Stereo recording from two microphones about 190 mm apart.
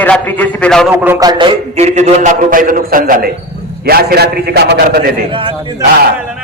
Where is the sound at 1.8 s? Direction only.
35° right (ahead or behind); by 5.0 s 55° right (ahead or behind).